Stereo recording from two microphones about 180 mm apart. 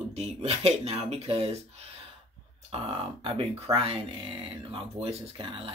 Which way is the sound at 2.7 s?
30° right (ahead or behind).